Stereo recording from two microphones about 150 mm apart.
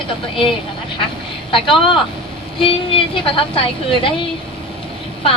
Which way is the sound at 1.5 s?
35° left (ahead or behind).